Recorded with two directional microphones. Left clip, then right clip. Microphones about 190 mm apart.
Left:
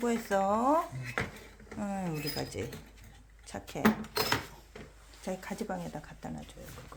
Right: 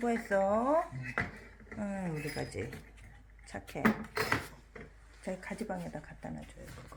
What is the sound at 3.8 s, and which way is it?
Speech, 60° left (ahead or behind).